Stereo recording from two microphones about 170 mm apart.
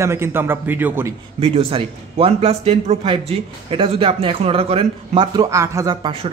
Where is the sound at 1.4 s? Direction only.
35° right (ahead or behind).